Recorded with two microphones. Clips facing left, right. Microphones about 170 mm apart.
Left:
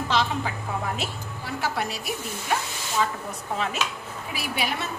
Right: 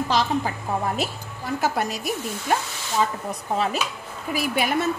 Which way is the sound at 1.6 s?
45° right (ahead or behind).